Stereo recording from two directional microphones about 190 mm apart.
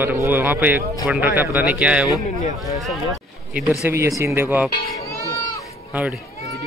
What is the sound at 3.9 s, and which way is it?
Music, 15° right (ahead or behind).